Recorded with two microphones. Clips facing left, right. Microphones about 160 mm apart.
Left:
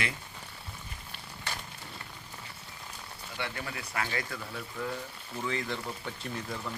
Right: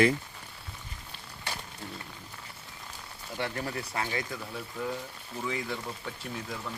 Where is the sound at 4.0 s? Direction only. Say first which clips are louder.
Even; 20° right (ahead or behind).